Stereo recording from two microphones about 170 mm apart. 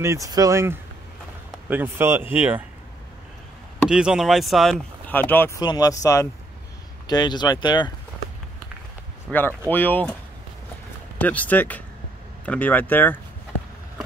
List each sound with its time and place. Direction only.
0.0 s speech: 20° right (ahead or behind)
3.9 s speech: 5° right (ahead or behind); by 5.6 s 10° left (ahead or behind)
5.6 s speech: 25° left (ahead or behind)
9.3 s speech: 5° left (ahead or behind)
11.1 s speech: 10° left (ahead or behind)